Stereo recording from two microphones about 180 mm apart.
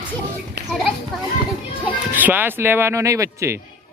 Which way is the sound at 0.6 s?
70° right (ahead or behind).